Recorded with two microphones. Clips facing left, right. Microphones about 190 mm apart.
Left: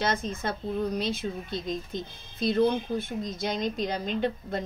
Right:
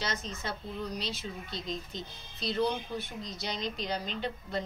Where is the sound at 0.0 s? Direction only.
55° left (ahead or behind).